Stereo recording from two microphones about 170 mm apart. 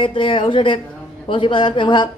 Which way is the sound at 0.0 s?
30° left (ahead or behind).